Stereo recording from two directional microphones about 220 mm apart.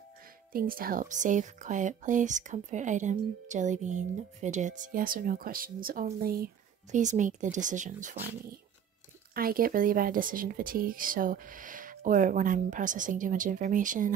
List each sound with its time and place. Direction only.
0.5 s speech: 40° right (ahead or behind)
9.3 s speech: 40° right (ahead or behind)